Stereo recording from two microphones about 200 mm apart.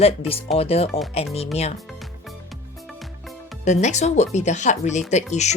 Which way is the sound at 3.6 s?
35° left (ahead or behind).